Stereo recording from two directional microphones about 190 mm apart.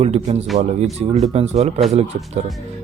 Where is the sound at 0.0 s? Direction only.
35° right (ahead or behind).